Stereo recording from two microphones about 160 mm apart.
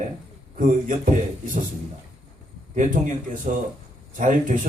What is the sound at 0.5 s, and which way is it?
A man's voice, 55° right (ahead or behind).